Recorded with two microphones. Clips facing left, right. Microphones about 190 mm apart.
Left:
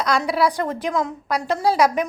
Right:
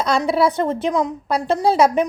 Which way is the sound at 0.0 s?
25° right (ahead or behind).